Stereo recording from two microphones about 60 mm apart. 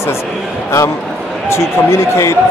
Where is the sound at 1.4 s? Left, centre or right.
Left.